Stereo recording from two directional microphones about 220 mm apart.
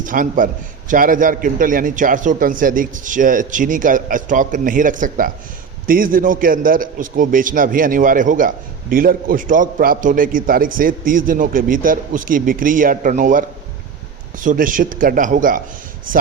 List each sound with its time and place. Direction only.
0.0 s a man's voice: 40° right (ahead or behind)